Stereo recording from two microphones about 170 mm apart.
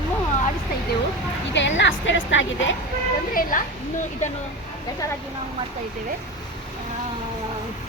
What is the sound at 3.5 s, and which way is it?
Speech, 50° left (ahead or behind).